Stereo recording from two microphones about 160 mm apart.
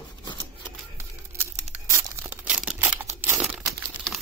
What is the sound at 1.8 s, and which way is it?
Tearing, 15° right (ahead or behind).